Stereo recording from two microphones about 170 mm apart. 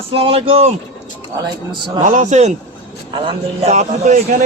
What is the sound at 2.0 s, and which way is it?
Speech, 45° right (ahead or behind).